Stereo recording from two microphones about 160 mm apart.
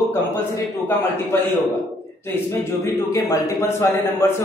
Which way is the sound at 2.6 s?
20° left (ahead or behind).